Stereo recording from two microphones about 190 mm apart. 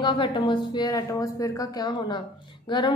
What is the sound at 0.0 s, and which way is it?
A woman's voice, 25° left (ahead or behind).